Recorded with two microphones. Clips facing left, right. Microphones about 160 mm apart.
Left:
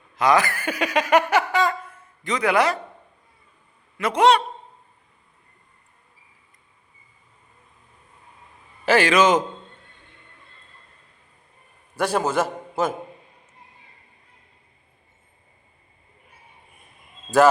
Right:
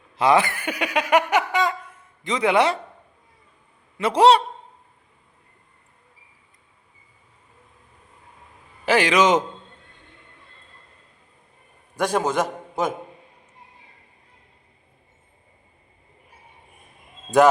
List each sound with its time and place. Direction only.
0.2 s speech: 25° right (ahead or behind)
3.9 s a man's voice: 30° right (ahead or behind)
8.9 s speech: 15° right (ahead or behind)
11.9 s a man's voice: 5° left (ahead or behind)